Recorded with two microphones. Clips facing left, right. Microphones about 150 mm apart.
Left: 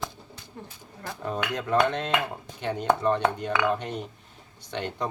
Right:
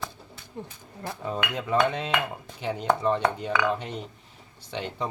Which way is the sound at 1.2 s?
5° right (ahead or behind).